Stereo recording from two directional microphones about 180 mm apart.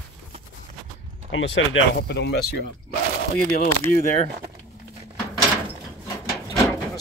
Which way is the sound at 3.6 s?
50° left (ahead or behind).